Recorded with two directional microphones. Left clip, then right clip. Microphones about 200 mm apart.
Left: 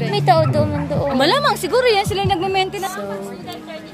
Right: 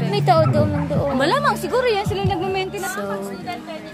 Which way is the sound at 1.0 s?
30° left (ahead or behind).